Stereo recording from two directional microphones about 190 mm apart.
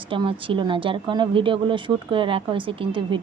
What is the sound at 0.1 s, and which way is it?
Speech, 25° right (ahead or behind).